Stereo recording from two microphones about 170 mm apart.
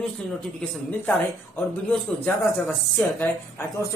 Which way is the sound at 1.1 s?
5° left (ahead or behind).